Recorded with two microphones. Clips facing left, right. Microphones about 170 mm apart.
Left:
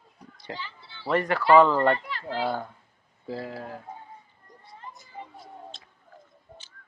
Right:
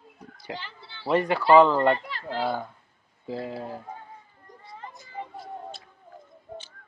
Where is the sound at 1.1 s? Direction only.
25° right (ahead or behind).